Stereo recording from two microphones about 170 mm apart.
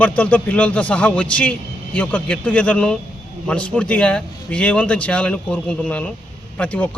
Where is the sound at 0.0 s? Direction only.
10° left (ahead or behind).